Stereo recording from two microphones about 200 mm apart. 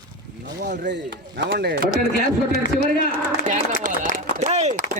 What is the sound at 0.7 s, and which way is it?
Speech, 60° right (ahead or behind).